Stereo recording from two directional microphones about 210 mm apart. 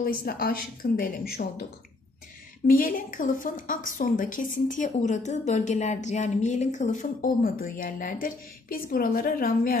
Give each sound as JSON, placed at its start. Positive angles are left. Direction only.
{"t": 0.0, "sound": "a woman's voice", "side_deg": 45}